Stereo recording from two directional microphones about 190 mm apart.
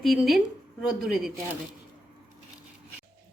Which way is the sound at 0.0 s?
Centre (ahead or behind).